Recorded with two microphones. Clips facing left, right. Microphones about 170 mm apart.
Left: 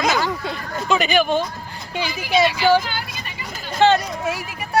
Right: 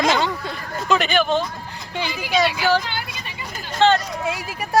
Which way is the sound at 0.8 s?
5° left (ahead or behind).